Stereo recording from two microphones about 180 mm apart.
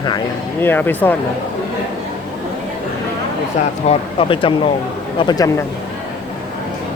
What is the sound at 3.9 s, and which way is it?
Speech, 30° left (ahead or behind).